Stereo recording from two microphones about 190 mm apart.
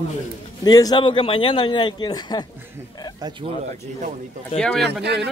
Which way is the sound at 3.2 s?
25° right (ahead or behind).